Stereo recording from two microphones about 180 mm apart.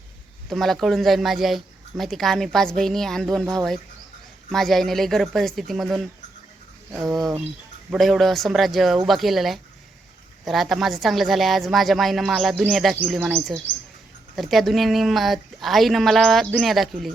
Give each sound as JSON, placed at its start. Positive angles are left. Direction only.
{"t": 0.5, "sound": "speech", "side_deg": 0}
{"t": 7.9, "sound": "speech", "side_deg": 0}